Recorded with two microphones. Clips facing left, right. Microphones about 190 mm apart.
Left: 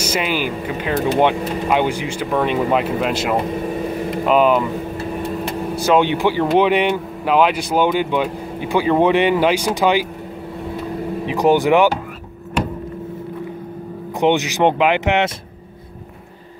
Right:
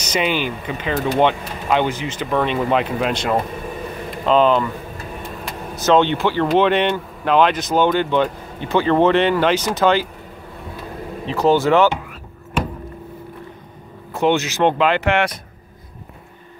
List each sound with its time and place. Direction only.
0.0 s speech: 5° left (ahead or behind)
5.9 s speech: 10° left (ahead or behind)
11.2 s speech: 15° left (ahead or behind)
14.2 s speech: 15° left (ahead or behind)